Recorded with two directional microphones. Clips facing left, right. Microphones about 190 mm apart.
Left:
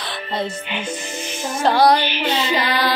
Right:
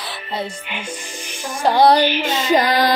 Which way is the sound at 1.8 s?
40° right (ahead or behind).